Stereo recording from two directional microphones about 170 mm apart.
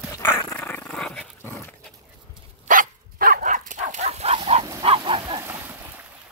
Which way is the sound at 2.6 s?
55° right (ahead or behind).